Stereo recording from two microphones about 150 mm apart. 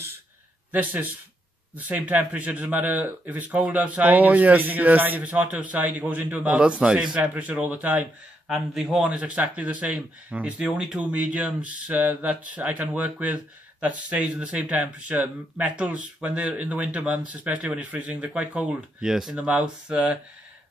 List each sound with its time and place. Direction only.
0.7 s speech: 15° right (ahead or behind)